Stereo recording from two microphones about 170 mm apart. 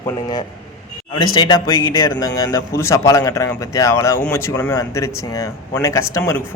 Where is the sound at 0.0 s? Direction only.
25° left (ahead or behind).